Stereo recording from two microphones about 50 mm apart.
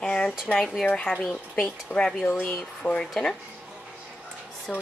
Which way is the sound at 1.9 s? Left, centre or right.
Centre.